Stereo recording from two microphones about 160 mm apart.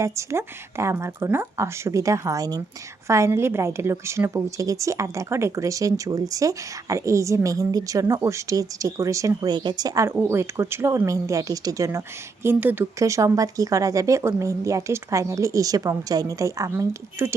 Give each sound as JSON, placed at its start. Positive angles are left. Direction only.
{"t": 0.0, "sound": "a woman's voice", "side_deg": -20}